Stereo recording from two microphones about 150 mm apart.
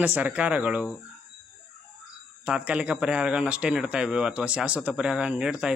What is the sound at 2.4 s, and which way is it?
Speech, 10° right (ahead or behind).